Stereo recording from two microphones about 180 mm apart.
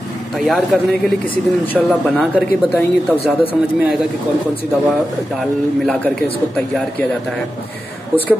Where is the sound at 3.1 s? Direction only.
30° left (ahead or behind).